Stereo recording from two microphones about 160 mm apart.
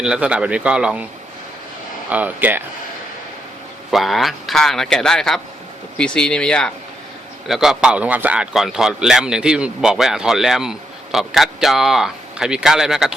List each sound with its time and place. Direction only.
0.0 s speech: 5° right (ahead or behind)
2.0 s speech: 10° right (ahead or behind)
3.9 s speech: centre (ahead or behind)